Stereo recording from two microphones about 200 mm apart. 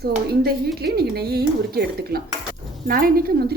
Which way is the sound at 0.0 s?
50° right (ahead or behind).